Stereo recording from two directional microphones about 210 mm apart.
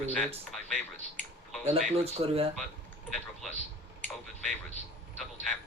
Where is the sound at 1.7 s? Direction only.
30° right (ahead or behind).